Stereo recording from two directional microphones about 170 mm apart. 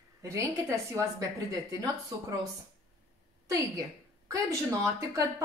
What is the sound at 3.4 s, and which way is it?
A woman's voice, 20° right (ahead or behind).